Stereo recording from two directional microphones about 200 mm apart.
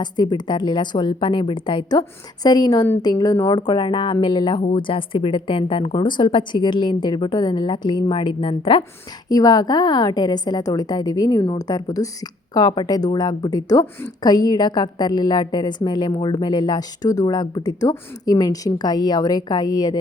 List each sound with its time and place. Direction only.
0.0 s a woman's voice: 20° left (ahead or behind)